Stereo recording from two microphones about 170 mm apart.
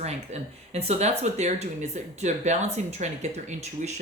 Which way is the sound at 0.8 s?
40° right (ahead or behind).